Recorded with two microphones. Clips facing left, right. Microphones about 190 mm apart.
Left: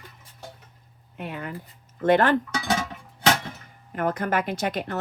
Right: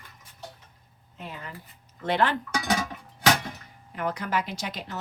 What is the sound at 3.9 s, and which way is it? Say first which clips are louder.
Speech: left 4 dB; 50° left (ahead or behind).